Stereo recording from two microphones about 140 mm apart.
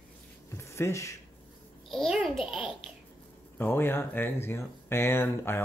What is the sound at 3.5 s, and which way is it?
Speech, 15° left (ahead or behind).